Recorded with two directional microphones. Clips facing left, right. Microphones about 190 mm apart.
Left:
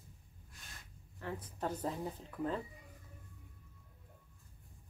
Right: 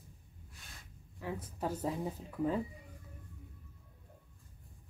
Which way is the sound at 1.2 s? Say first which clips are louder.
Right 2 dB; 10° right (ahead or behind).